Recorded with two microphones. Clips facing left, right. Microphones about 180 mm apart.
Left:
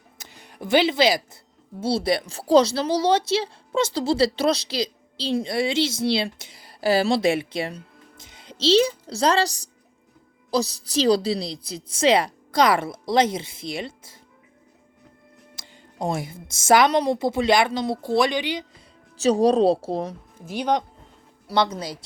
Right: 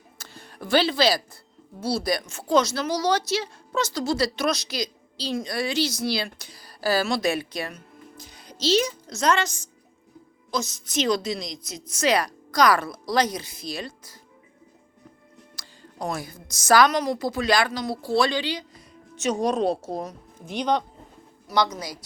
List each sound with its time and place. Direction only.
0.2 s speech: 20° left (ahead or behind)
15.5 s a woman's voice: 25° left (ahead or behind)
19.1 s a woman's voice: 35° left (ahead or behind)
20.4 s speech: 5° left (ahead or behind)
21.4 s speech: 30° left (ahead or behind)